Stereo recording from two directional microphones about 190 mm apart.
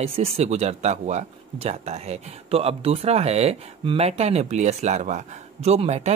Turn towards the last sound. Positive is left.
turn(degrees=-35)  # may be behind; listen again after turning